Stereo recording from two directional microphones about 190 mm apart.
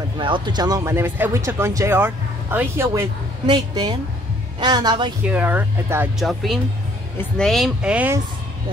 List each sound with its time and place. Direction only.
0.2 s speech: 25° right (ahead or behind)
5.2 s speech: 10° right (ahead or behind)